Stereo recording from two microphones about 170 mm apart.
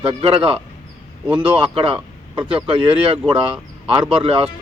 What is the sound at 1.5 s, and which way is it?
Speech, 30° right (ahead or behind).